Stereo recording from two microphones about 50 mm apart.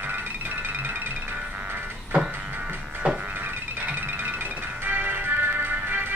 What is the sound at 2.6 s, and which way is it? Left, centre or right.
Music, centre.